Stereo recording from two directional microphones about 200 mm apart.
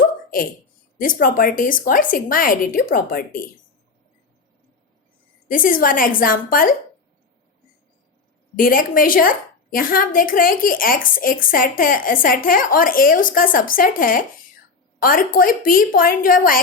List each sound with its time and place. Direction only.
0.3 s a woman's voice: 45° left (ahead or behind)
5.5 s a woman's voice: 45° left (ahead or behind)
8.5 s a woman's voice: 45° left (ahead or behind)